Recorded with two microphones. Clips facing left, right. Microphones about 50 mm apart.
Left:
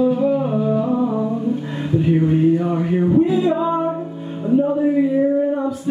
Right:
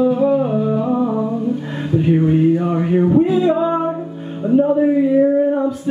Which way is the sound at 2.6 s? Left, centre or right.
Centre.